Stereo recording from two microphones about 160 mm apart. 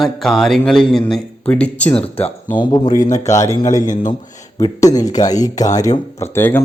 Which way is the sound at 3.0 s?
50° left (ahead or behind).